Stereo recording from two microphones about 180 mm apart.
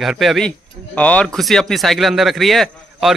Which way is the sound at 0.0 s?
Centre (ahead or behind).